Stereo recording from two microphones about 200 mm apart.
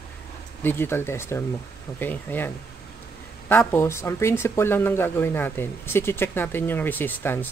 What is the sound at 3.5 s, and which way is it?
Speech, 10° left (ahead or behind).